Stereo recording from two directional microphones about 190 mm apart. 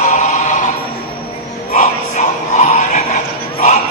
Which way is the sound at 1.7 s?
40° left (ahead or behind).